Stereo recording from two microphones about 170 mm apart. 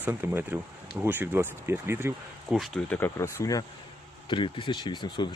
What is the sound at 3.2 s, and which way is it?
Speech, 20° left (ahead or behind).